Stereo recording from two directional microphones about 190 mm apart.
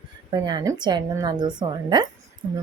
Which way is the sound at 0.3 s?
25° right (ahead or behind).